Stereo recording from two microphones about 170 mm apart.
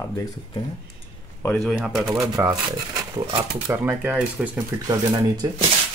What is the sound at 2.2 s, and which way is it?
Speech, 20° right (ahead or behind).